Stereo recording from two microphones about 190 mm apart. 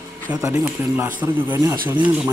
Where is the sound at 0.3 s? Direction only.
15° right (ahead or behind).